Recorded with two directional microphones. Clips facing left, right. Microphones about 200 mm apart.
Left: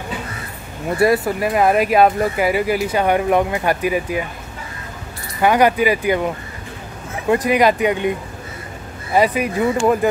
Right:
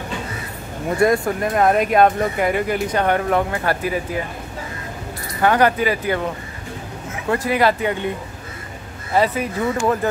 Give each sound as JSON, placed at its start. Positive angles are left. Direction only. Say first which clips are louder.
{"t": 0.9, "sound": "speech", "louder": "left 1 dB", "side_deg": 5}
{"t": 5.4, "sound": "speech", "louder": "left 2 dB", "side_deg": 10}
{"t": 9.1, "sound": "speech", "louder": "left 2 dB", "side_deg": 15}